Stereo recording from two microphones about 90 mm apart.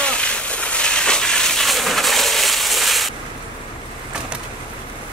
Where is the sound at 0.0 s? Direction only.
10° left (ahead or behind).